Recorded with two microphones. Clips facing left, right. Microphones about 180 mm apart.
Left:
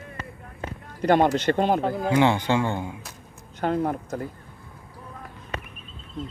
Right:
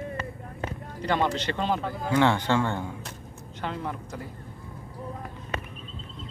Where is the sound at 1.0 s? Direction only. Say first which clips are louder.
Left 7 dB; 50° left (ahead or behind).